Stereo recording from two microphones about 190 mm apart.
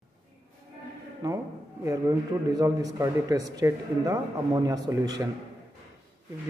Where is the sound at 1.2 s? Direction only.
20° right (ahead or behind).